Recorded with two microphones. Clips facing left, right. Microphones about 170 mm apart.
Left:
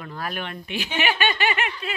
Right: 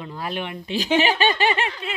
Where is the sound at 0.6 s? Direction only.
40° right (ahead or behind).